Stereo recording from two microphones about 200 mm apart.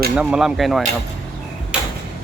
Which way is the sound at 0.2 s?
5° right (ahead or behind).